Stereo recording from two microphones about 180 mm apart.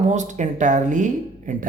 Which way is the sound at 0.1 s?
40° right (ahead or behind).